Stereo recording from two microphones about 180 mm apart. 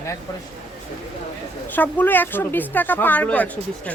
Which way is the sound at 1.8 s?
10° left (ahead or behind).